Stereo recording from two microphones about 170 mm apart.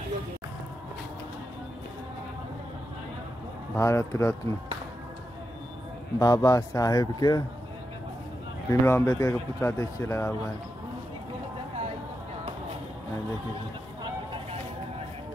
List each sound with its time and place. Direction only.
3.7 s speech: 15° left (ahead or behind)
6.1 s a man's voice: 20° left (ahead or behind)
8.6 s speech: 15° left (ahead or behind)